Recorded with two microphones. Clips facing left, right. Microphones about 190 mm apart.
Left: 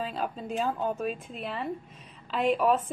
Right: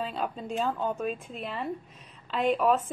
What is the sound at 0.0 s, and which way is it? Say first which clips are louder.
A woman's voice: even; centre (ahead or behind).